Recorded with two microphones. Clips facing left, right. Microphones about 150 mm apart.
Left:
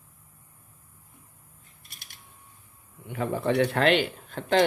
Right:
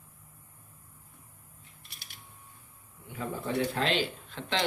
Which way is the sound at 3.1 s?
70° left (ahead or behind).